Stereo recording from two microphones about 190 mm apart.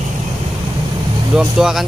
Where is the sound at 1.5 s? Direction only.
5° right (ahead or behind).